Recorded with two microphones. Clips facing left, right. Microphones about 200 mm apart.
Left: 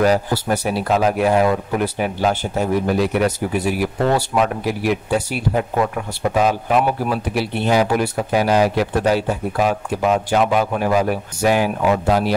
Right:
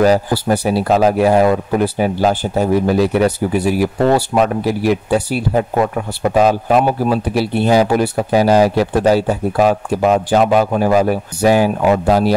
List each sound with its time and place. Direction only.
0.0 s a man's voice: 35° right (ahead or behind)